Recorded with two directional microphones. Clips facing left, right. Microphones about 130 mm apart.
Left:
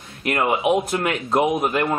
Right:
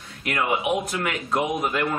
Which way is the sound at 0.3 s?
30° left (ahead or behind).